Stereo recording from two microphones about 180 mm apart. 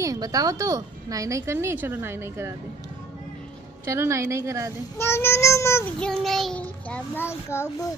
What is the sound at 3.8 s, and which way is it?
Speech, 15° right (ahead or behind).